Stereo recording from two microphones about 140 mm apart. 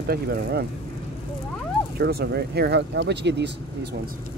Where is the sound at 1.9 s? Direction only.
90° right.